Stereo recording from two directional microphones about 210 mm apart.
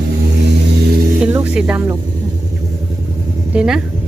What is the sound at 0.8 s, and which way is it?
Speech, 45° right (ahead or behind).